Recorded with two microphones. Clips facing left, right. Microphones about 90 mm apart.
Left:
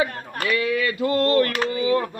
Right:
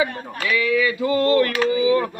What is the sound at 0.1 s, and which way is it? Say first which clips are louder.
Speech: right 1 dB; 60° left (ahead or behind).